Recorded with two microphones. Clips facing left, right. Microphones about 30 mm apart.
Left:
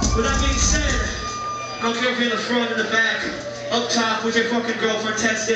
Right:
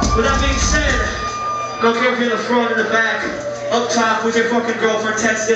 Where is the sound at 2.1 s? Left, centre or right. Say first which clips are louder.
Right 4 dB; left.